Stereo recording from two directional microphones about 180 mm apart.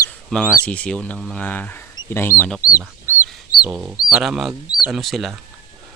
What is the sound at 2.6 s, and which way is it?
Speech, 55° left (ahead or behind).